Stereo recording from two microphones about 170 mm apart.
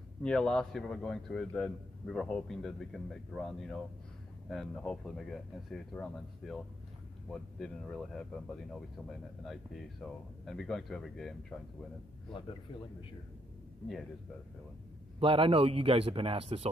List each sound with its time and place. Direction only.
0.2 s speech: 5° left (ahead or behind)
15.1 s a man's voice: 35° right (ahead or behind)